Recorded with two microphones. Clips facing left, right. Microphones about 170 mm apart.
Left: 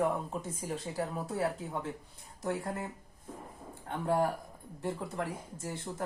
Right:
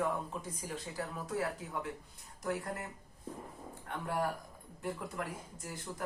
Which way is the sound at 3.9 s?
30° left (ahead or behind).